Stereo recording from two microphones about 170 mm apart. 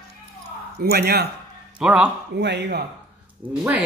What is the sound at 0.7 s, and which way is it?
Speech, 65° right (ahead or behind).